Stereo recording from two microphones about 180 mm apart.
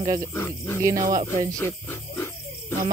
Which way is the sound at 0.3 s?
15° left (ahead or behind).